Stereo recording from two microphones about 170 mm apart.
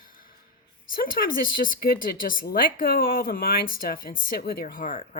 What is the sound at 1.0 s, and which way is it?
Speech, 55° left (ahead or behind).